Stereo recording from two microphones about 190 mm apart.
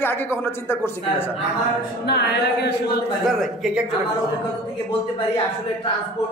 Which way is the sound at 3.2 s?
Centre (ahead or behind).